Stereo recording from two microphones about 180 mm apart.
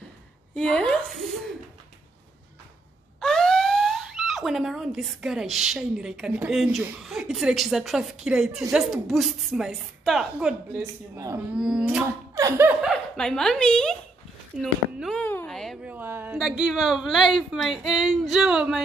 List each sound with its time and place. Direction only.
0.6 s a woman's voice: 5° left (ahead or behind)
3.2 s a woman's voice: 5° left (ahead or behind)
12.4 s laughter: 15° right (ahead or behind)
12.8 s speech: centre (ahead or behind)
14.6 s a sound: centre (ahead or behind)
15.9 s a sound: 10° right (ahead or behind)
16.3 s a woman's voice: centre (ahead or behind)